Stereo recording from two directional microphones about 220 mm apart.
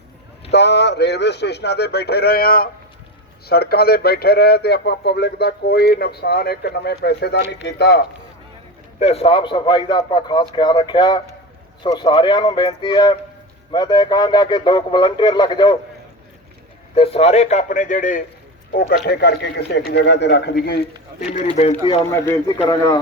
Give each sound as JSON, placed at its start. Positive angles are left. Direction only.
{"t": 0.5, "sound": "speech", "side_deg": 50}
{"t": 9.0, "sound": "a man's voice", "side_deg": 30}
{"t": 16.9, "sound": "a man's voice", "side_deg": 25}
{"t": 21.2, "sound": "a man's voice", "side_deg": 30}
{"t": 22.1, "sound": "a man's voice", "side_deg": 10}